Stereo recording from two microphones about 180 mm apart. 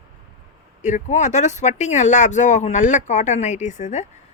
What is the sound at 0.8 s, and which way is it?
Speech, 40° left (ahead or behind).